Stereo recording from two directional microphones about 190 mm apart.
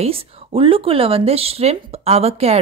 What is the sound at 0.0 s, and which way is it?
Speech, 30° right (ahead or behind).